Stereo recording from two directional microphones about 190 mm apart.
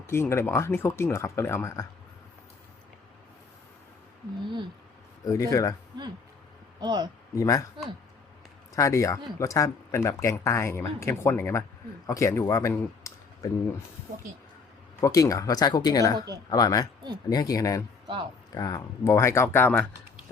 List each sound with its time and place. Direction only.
0.1 s speech: 15° left (ahead or behind)
5.2 s speech: 15° left (ahead or behind)
6.7 s speech: 20° right (ahead or behind)
7.3 s speech: 15° left (ahead or behind)
8.7 s a man's voice: 15° left (ahead or behind)
15.0 s speech: 20° left (ahead or behind)
16.1 s speech: 20° right (ahead or behind)
16.5 s speech: 20° left (ahead or behind)